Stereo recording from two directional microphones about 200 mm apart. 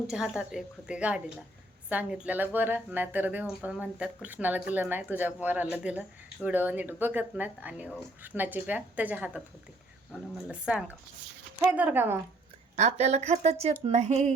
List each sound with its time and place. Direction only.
0.1 s a woman's voice: 5° right (ahead or behind)
12.7 s speech: 35° right (ahead or behind)